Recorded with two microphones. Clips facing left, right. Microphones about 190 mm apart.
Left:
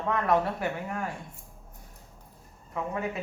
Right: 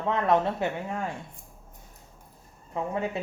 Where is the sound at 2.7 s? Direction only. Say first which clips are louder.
Right 3 dB; 25° right (ahead or behind).